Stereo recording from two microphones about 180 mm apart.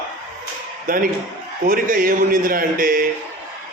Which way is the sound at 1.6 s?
50° right (ahead or behind).